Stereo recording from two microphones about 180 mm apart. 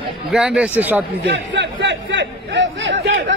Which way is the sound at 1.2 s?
80° right.